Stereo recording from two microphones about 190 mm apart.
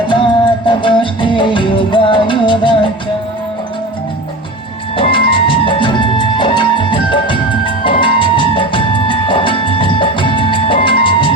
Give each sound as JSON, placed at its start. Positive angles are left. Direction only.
{"t": 0.1, "sound": "music", "side_deg": 25}
{"t": 4.9, "sound": "music", "side_deg": 25}